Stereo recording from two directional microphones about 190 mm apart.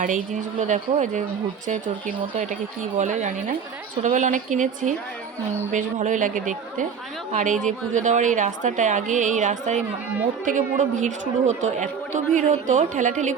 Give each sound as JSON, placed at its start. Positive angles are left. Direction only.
{"t": 0.6, "sound": "speech", "side_deg": -40}
{"t": 2.3, "sound": "speech", "side_deg": -40}